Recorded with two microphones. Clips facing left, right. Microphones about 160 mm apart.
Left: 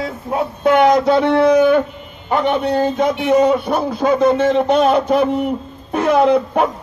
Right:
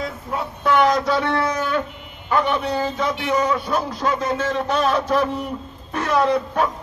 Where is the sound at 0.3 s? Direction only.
60° left (ahead or behind).